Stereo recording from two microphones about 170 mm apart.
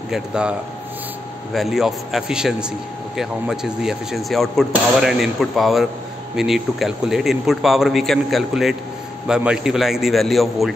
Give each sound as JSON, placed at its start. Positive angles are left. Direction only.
{"t": 0.1, "sound": "speech", "side_deg": -5}